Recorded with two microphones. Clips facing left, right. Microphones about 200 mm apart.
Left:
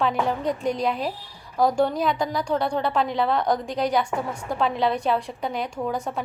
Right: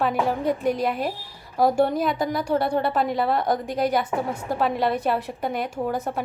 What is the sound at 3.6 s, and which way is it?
Speech, 50° right (ahead or behind).